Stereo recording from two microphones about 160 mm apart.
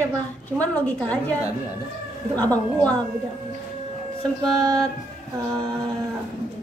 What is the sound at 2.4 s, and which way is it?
Speech, 10° left (ahead or behind).